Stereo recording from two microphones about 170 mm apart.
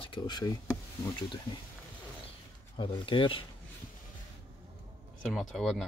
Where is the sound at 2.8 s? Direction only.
30° left (ahead or behind).